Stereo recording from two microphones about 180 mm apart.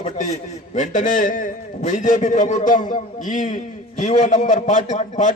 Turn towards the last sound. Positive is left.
turn(degrees=40)  # may be behind; listen again after turning